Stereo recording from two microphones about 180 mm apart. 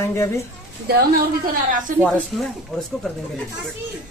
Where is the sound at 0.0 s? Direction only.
15° left (ahead or behind).